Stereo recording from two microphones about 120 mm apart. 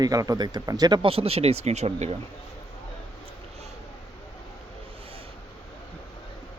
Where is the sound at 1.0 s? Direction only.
55° right (ahead or behind).